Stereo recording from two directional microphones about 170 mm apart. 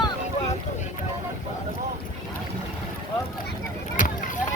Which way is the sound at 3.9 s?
55° left (ahead or behind).